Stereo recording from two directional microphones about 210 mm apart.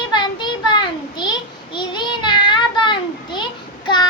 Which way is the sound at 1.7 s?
20° left (ahead or behind).